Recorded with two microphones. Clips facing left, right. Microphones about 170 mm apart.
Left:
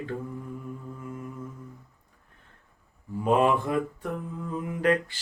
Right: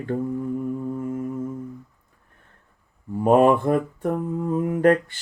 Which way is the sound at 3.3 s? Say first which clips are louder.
Right 7 dB; 45° right (ahead or behind).